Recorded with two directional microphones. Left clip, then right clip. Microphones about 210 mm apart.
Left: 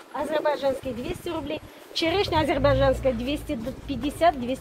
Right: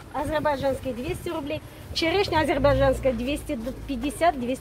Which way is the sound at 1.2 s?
5° left (ahead or behind).